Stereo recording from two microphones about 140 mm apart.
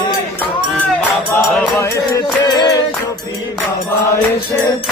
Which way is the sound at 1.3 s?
15° left (ahead or behind).